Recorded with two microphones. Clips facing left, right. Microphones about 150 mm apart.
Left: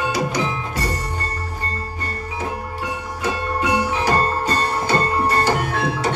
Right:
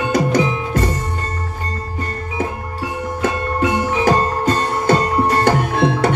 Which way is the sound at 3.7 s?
50° right (ahead or behind).